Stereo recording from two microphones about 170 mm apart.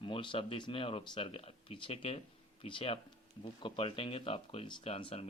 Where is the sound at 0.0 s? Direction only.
30° left (ahead or behind).